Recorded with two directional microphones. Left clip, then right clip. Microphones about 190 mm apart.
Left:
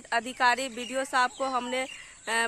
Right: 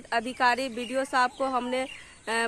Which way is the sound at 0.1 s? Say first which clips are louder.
Even; 15° left (ahead or behind).